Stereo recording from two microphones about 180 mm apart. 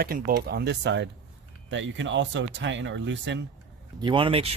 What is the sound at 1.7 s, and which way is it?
Speech, 90° right.